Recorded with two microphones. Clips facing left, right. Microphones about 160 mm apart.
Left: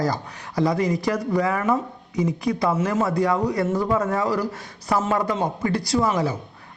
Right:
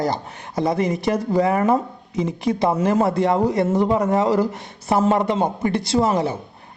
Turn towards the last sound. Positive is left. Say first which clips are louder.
# right 2 dB
turn(degrees=-25)  # may be behind; listen again after turning